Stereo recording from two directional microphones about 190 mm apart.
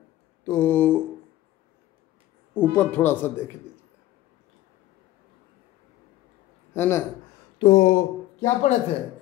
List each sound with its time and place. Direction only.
0.5 s a sound: 10° left (ahead or behind)
2.5 s speech: 10° left (ahead or behind)
6.7 s speech: 15° left (ahead or behind)
7.5 s speech: 35° left (ahead or behind)